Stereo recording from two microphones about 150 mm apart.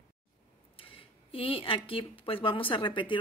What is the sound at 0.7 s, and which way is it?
Speech, 35° left (ahead or behind).